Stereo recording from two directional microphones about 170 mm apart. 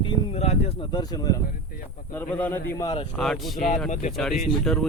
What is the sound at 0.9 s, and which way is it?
Speech, 25° left (ahead or behind).